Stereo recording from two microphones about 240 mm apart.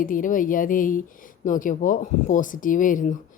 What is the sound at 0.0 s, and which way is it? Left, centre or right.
Speech, left.